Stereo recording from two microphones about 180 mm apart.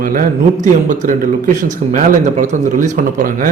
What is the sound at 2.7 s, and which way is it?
Speech, 45° right (ahead or behind).